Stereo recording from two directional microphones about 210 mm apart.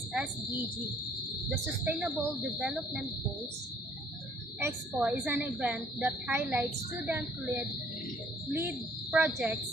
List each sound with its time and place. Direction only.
1.5 s speech: 5° right (ahead or behind)
4.6 s a woman's voice: 10° right (ahead or behind)